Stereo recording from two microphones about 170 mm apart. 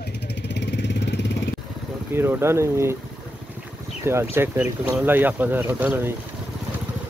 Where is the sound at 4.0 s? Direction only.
15° right (ahead or behind).